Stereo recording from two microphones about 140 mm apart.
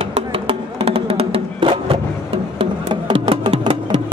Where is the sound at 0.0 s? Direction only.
45° right (ahead or behind).